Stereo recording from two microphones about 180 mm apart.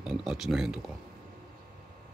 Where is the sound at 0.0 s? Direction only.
5° right (ahead or behind).